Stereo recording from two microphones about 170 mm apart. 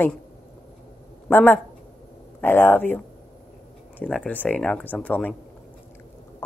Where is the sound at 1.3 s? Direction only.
10° left (ahead or behind).